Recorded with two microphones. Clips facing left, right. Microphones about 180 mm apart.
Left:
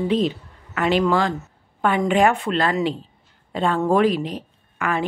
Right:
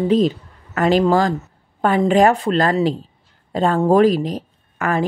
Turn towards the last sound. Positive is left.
turn(degrees=-40)  # may be behind; listen again after turning